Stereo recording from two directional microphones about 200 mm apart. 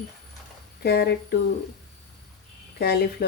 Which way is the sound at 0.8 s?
55° left (ahead or behind).